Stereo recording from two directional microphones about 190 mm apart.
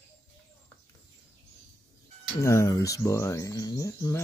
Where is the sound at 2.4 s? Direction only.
15° left (ahead or behind).